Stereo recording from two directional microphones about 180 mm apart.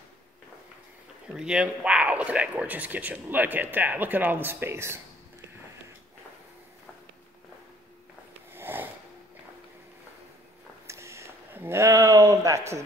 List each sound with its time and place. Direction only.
1.3 s speech: 5° right (ahead or behind)
8.5 s sniff: 10° right (ahead or behind)
10.9 s a sound: 15° right (ahead or behind)